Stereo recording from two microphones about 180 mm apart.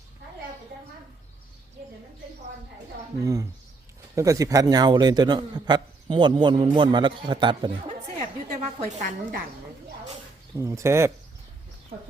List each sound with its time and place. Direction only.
3.2 s a man's voice: 15° right (ahead or behind)
8.8 s a woman's voice: 40° right (ahead or behind)
10.6 s speech: 15° right (ahead or behind)